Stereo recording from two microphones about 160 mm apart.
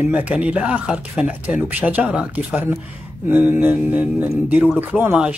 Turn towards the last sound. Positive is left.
turn(degrees=-10)  # may be behind; listen again after turning